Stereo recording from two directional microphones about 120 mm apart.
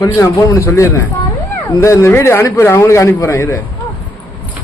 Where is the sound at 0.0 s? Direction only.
30° left (ahead or behind).